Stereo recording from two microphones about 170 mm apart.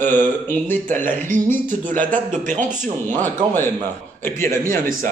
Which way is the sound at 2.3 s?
45° right (ahead or behind).